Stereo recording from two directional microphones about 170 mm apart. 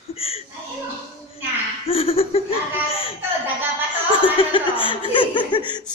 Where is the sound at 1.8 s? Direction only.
35° left (ahead or behind).